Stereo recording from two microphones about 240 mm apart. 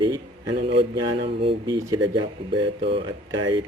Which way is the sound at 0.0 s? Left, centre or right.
Centre.